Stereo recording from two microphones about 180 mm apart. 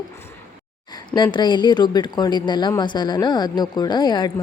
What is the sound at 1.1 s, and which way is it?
A woman's voice, 25° left (ahead or behind).